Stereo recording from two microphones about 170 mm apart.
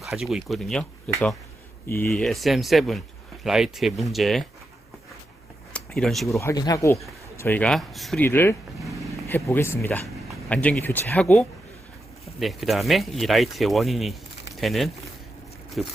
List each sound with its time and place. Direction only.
0.0 s speech: centre (ahead or behind); by 2.2 s 15° left (ahead or behind)
2.2 s speech: centre (ahead or behind)
5.7 s speech: 5° left (ahead or behind)
6.4 s speech: 20° left (ahead or behind); by 8.2 s centre (ahead or behind)
8.2 s speech: 15° left (ahead or behind)